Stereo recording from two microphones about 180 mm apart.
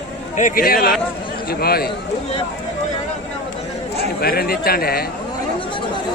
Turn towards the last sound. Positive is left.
turn(degrees=55)  # may be behind; listen again after turning